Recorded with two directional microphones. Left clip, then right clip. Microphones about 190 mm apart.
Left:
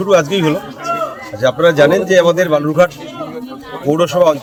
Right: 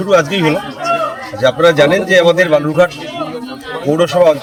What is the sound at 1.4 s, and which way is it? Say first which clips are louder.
Speech: right 1 dB; 35° left (ahead or behind).